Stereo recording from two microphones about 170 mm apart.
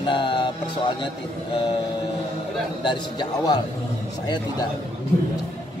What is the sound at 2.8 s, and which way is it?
Speech, 25° left (ahead or behind).